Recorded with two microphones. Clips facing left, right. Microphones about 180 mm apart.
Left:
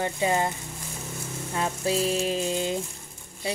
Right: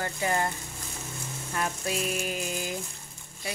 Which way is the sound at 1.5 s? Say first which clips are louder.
Left 4 dB; 25° left (ahead or behind).